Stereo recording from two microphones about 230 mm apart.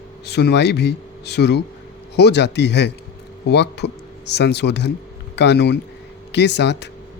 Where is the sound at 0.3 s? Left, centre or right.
Left.